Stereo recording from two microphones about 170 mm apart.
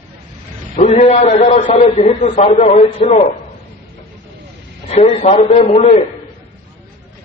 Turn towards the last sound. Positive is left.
turn(degrees=40)  # may be behind; listen again after turning